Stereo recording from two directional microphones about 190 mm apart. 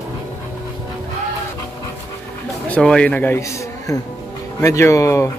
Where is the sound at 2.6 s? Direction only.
5° left (ahead or behind).